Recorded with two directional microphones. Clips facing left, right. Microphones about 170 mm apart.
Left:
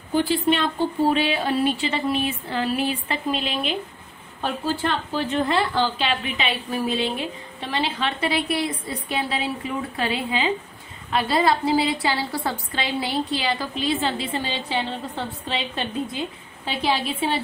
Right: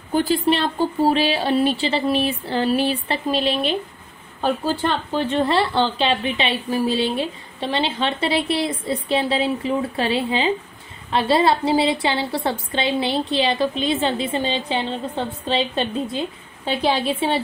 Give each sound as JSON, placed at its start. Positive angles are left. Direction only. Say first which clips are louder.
{"t": 0.1, "sound": "a woman's voice", "louder": "right 2 dB", "side_deg": -40}